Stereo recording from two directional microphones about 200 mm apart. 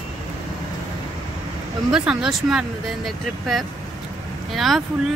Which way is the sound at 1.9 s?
5° right (ahead or behind).